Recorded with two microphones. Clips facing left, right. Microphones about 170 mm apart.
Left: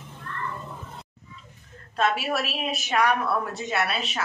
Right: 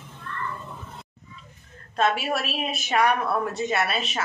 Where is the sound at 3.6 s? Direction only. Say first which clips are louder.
Right 2 dB; centre (ahead or behind).